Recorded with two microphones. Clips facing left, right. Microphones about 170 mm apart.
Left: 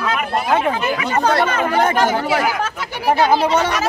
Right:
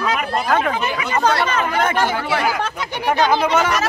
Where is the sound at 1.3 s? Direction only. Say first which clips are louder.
Left 3 dB; 45° left (ahead or behind).